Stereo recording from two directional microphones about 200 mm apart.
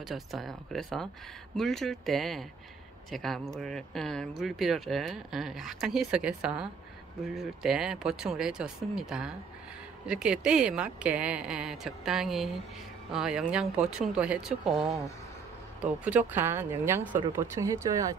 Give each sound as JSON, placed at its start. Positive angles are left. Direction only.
{"t": 0.0, "sound": "speech", "side_deg": 0}